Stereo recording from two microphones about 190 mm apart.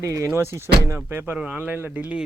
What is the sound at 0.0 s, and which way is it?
Speech, 15° right (ahead or behind).